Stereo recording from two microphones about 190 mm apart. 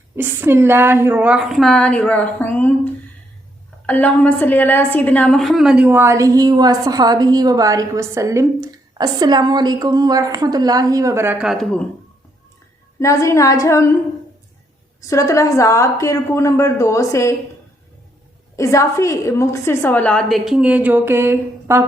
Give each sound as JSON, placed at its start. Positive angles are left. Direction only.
{"t": 0.2, "sound": "a woman's voice", "side_deg": -10}
{"t": 13.0, "sound": "a woman's voice", "side_deg": 15}
{"t": 15.0, "sound": "a woman's voice", "side_deg": 15}
{"t": 18.5, "sound": "a woman's voice", "side_deg": 15}